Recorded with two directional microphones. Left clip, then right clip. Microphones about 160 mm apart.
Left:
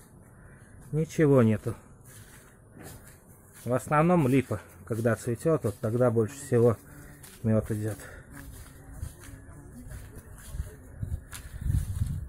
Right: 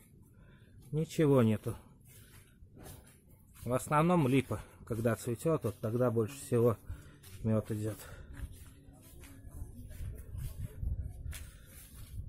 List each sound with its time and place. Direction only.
0.9 s speech: 15° right (ahead or behind)
3.6 s speech: 20° right (ahead or behind)